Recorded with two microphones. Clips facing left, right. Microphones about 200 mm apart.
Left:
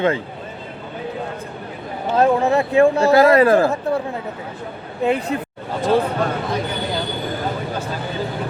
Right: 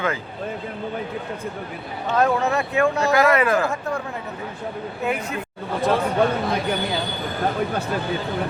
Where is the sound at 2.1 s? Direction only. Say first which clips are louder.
Left 4 dB; 30° left (ahead or behind).